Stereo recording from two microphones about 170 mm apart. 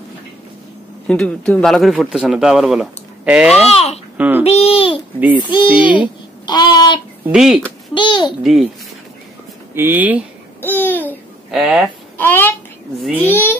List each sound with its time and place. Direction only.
1.0 s speech: 5° left (ahead or behind)
3.6 s a child's voice: 40° left (ahead or behind)
4.2 s speech: 10° right (ahead or behind)
4.5 s a child's voice: 35° left (ahead or behind)
7.2 s speech: 5° right (ahead or behind)
7.9 s a child's voice: 30° left (ahead or behind)
9.8 s speech: 10° right (ahead or behind)
10.6 s babbling: 10° left (ahead or behind)
11.5 s speech: centre (ahead or behind)
12.2 s a child's voice: 10° left (ahead or behind)